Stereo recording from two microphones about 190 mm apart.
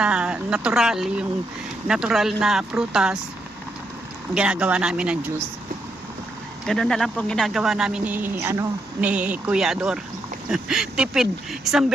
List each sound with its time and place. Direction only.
0.0 s speech: 5° right (ahead or behind)
4.4 s speech: 5° right (ahead or behind)
6.7 s speech: 5° left (ahead or behind)